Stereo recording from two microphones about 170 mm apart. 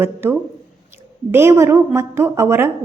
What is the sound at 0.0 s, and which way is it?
A woman's voice, 15° right (ahead or behind).